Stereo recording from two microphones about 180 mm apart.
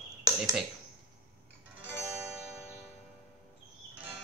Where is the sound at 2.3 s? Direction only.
5° right (ahead or behind).